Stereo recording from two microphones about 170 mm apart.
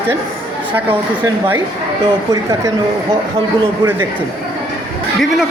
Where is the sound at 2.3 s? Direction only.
20° right (ahead or behind).